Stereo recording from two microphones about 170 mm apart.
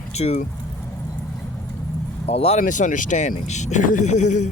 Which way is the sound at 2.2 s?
35° left (ahead or behind).